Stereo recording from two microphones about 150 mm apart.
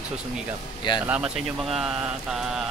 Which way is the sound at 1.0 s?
5° right (ahead or behind).